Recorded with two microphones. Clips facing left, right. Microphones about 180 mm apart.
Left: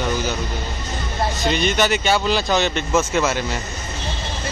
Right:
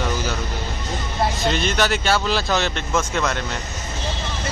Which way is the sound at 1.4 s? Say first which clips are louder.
Left 4 dB; centre (ahead or behind).